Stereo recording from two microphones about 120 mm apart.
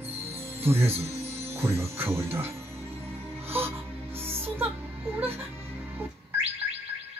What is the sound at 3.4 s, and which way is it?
Music, 20° right (ahead or behind).